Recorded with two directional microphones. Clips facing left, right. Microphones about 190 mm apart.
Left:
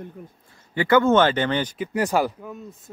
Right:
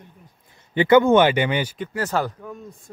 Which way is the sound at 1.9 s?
10° left (ahead or behind).